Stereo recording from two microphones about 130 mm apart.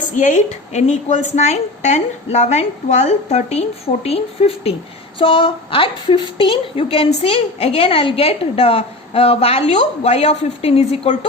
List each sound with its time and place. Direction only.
0.0 s a woman's voice: 80° left; by 11.1 s 50° left (ahead or behind)